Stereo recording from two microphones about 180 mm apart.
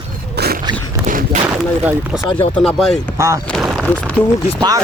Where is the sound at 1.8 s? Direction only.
10° right (ahead or behind).